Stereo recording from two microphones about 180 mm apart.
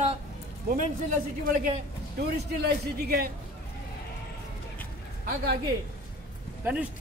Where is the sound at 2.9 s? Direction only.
55° right (ahead or behind).